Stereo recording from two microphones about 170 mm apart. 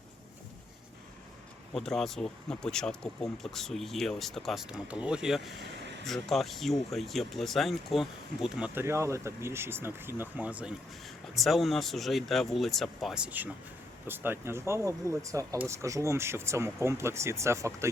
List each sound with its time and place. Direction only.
1.7 s speech: centre (ahead or behind); by 17.8 s 15° right (ahead or behind)